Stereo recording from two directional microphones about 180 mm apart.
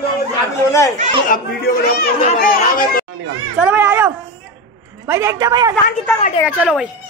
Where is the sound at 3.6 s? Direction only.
10° right (ahead or behind).